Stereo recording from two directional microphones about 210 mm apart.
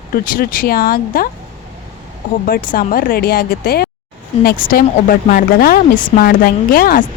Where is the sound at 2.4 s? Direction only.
45° left (ahead or behind).